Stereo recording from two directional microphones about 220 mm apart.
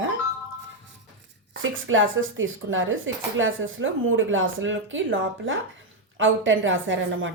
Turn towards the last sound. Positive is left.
turn(degrees=-60)  # may be behind; listen again after turning